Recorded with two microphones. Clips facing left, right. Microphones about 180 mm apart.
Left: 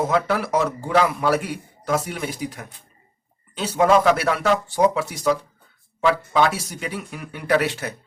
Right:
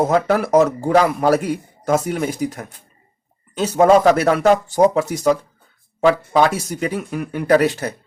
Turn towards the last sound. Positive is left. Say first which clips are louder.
# right 6 dB
turn(degrees=-40)  # may be behind; listen again after turning